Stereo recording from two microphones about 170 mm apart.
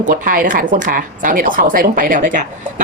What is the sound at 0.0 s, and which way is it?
Speech, 55° right (ahead or behind).